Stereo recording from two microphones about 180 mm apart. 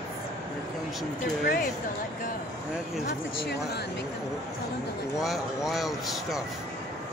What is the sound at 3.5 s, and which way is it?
Speech, 65° left (ahead or behind).